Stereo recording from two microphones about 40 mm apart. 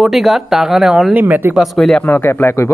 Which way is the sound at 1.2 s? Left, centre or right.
Right.